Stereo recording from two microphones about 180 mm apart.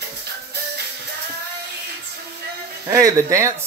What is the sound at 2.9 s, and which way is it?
Speech, 20° right (ahead or behind).